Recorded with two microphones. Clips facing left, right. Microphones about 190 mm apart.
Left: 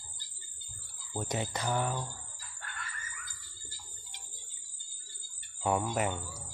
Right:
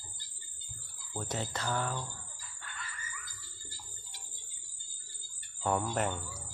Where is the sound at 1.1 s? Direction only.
15° left (ahead or behind).